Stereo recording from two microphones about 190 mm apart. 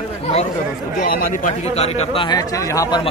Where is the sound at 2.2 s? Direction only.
15° left (ahead or behind).